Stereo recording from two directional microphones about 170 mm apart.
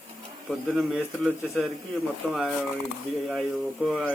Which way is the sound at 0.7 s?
5° right (ahead or behind).